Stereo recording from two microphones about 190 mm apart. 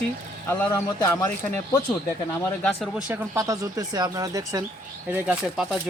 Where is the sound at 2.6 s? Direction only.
Centre (ahead or behind).